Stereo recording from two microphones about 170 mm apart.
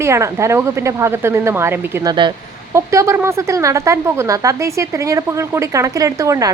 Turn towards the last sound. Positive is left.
turn(degrees=-20)  # may be behind; listen again after turning